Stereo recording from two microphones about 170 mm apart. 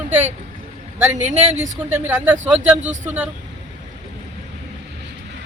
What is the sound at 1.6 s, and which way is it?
Speech, 15° right (ahead or behind).